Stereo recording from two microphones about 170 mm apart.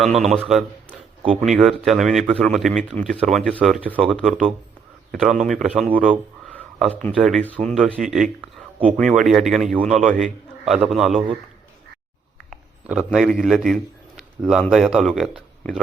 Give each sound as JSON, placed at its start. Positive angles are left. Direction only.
{"t": 0.1, "sound": "speech", "side_deg": -40}
{"t": 0.4, "sound": "a man's voice", "side_deg": 0}
{"t": 6.9, "sound": "a man's voice", "side_deg": 10}
{"t": 12.5, "sound": "a sound", "side_deg": -5}
{"t": 13.1, "sound": "a man's voice", "side_deg": 0}